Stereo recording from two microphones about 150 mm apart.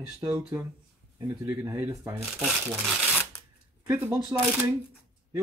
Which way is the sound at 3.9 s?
20° right (ahead or behind).